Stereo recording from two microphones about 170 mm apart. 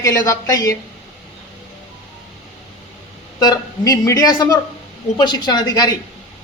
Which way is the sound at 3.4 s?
20° left (ahead or behind).